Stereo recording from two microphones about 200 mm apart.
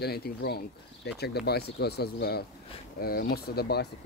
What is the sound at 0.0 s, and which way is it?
Speech, 50° left (ahead or behind).